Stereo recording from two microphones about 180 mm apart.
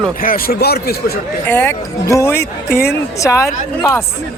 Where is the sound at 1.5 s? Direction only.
10° left (ahead or behind).